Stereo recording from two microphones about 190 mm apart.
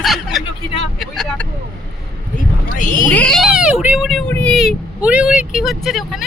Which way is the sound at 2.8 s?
45° left (ahead or behind).